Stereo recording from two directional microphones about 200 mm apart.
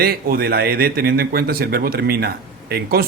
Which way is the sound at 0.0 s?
50° right (ahead or behind).